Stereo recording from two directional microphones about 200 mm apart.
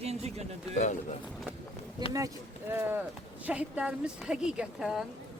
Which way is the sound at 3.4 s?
5° right (ahead or behind).